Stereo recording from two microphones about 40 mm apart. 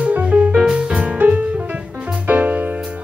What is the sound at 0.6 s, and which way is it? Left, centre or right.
Music, right.